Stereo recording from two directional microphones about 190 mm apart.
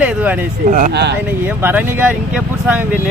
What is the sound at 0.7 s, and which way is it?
Speech, 45° right (ahead or behind).